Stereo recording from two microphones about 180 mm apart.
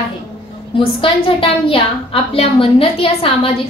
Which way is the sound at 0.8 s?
30° left (ahead or behind).